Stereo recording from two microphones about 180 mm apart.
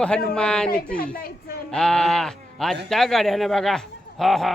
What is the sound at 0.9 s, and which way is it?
Speech, 55° left (ahead or behind).